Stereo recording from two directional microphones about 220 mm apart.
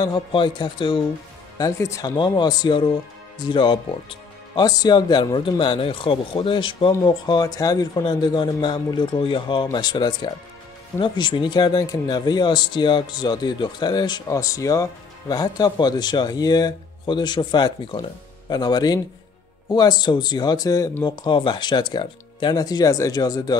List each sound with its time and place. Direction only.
0.0 s speech: 20° left (ahead or behind)